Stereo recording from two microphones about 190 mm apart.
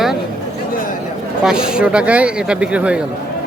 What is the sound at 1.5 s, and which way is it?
Speech, 5° right (ahead or behind).